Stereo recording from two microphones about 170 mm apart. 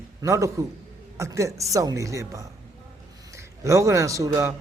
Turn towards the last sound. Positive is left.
turn(degrees=-20)  # may be behind; listen again after turning